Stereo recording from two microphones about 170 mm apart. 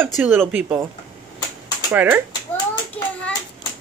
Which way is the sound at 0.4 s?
10° right (ahead or behind).